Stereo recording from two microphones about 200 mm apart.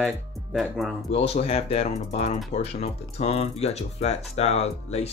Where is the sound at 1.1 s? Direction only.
30° left (ahead or behind).